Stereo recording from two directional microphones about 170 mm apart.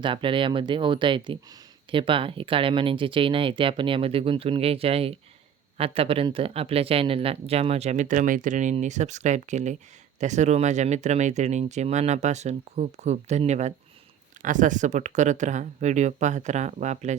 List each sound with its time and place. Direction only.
0.0 s speech: 30° right (ahead or behind)